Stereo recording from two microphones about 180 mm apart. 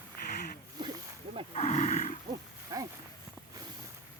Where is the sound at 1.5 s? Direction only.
40° left (ahead or behind).